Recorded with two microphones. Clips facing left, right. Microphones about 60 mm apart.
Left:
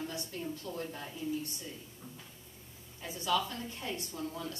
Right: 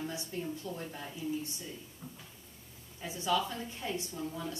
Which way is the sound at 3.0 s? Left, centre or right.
Centre.